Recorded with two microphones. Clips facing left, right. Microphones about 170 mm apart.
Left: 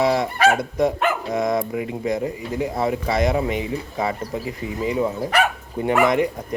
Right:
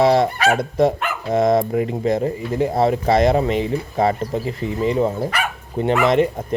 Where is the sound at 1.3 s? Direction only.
30° right (ahead or behind).